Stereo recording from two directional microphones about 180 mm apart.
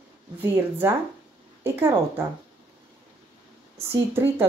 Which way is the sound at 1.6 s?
15° right (ahead or behind).